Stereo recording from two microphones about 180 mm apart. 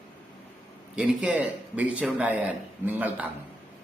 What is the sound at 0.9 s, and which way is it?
A man's voice, 5° right (ahead or behind).